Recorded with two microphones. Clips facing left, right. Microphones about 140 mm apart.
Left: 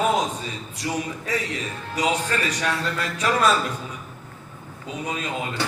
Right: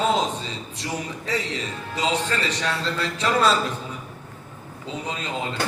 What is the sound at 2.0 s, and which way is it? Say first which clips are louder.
A man's voice: left 1 dB; 25° right (ahead or behind).